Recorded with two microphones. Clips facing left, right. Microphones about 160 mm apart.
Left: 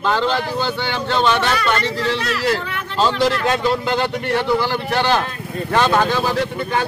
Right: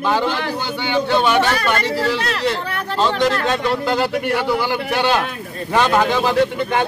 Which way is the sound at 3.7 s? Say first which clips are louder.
Right 1 dB; 5° right (ahead or behind).